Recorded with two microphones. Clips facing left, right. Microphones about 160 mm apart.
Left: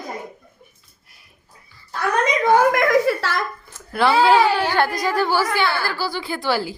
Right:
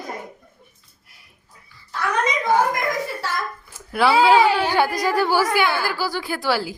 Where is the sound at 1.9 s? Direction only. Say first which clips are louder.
Left 2 dB; 60° left (ahead or behind); by 3.4 s 80° left.